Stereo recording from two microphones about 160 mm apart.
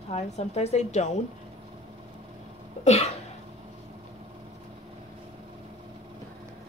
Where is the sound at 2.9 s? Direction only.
40° left (ahead or behind).